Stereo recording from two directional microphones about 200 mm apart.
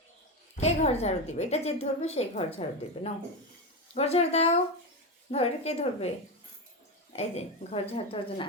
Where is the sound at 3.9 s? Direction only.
30° left (ahead or behind).